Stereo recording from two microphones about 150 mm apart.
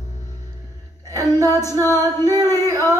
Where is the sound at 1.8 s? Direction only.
15° left (ahead or behind).